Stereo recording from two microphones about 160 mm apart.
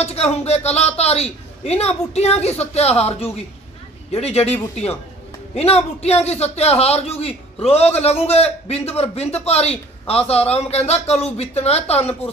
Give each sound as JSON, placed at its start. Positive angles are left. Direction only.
{"t": 0.0, "sound": "a man's voice", "side_deg": 40}